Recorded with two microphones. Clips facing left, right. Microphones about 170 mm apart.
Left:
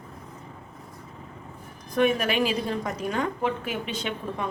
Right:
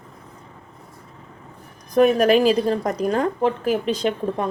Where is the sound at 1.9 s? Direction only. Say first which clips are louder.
Right 8 dB; 40° right (ahead or behind).